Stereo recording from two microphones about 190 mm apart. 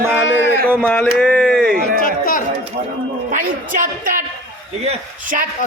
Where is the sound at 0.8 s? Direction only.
10° left (ahead or behind).